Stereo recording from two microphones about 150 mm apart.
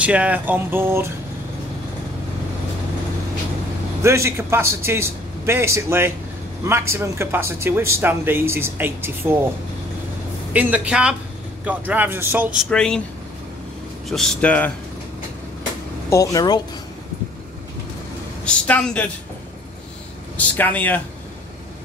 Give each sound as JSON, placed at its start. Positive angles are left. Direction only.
{"t": 0.0, "sound": "speech", "side_deg": -10}
{"t": 4.0, "sound": "speech", "side_deg": -20}
{"t": 10.5, "sound": "speech", "side_deg": -10}
{"t": 12.5, "sound": "speech", "side_deg": 5}
{"t": 14.0, "sound": "speech", "side_deg": 0}
{"t": 16.1, "sound": "speech", "side_deg": 20}
{"t": 18.4, "sound": "speech", "side_deg": 5}
{"t": 20.3, "sound": "speech", "side_deg": 10}